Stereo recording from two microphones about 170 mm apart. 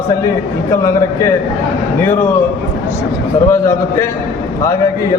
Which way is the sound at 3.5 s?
15° left (ahead or behind).